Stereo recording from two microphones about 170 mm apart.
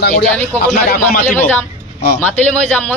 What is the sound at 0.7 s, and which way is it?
Speech, 50° left (ahead or behind).